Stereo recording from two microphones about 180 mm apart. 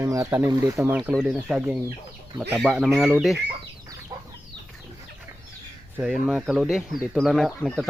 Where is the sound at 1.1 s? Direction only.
Centre (ahead or behind).